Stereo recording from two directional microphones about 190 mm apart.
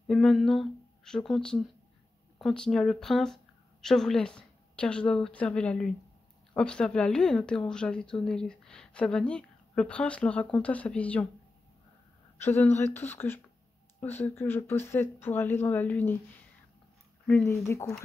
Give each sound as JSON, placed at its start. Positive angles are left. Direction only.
{"t": 0.1, "sound": "speech", "side_deg": 5}
{"t": 12.4, "sound": "speech", "side_deg": 10}
{"t": 17.5, "sound": "speech", "side_deg": 15}